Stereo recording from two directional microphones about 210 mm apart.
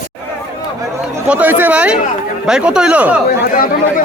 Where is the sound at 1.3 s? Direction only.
10° right (ahead or behind).